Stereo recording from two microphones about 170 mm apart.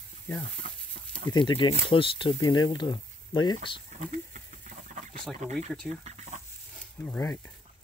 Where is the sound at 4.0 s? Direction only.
50° right (ahead or behind).